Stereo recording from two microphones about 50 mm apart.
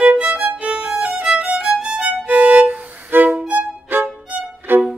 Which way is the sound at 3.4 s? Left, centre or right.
Right.